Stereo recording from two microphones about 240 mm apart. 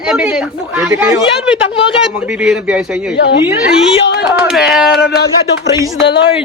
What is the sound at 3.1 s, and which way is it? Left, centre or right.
Speech, left.